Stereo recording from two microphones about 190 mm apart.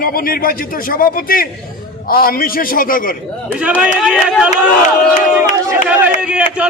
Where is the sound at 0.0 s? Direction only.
50° left (ahead or behind).